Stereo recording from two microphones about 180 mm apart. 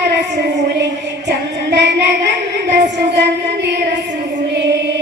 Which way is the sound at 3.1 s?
70° right (ahead or behind).